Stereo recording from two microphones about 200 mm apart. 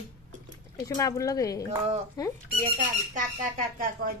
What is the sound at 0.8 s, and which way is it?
Speech, 15° left (ahead or behind).